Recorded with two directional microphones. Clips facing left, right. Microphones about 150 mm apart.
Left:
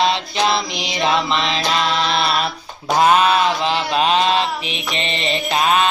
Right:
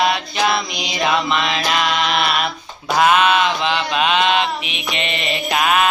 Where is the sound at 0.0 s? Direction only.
25° left (ahead or behind).